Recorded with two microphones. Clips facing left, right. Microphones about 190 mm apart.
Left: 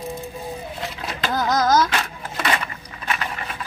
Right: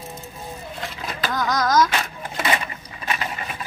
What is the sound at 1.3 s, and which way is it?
Child singing, 30° left (ahead or behind).